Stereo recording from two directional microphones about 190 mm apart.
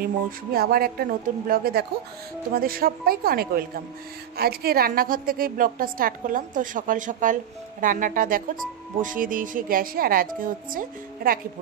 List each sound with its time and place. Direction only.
0.6 s speech: 55° right (ahead or behind)